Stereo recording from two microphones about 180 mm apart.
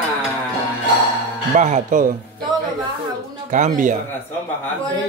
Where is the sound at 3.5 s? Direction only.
45° right (ahead or behind).